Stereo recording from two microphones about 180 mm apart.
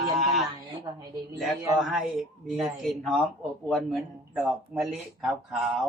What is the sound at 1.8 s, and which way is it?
Speech, centre (ahead or behind).